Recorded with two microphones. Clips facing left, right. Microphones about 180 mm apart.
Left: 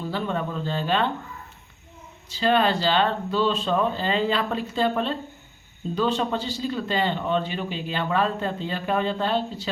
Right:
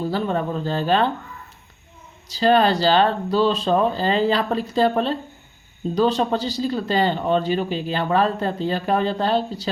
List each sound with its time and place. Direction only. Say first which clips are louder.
0.0 s speech: right 5 dB; 40° right (ahead or behind)
2.3 s speech: right 4 dB; 40° right (ahead or behind)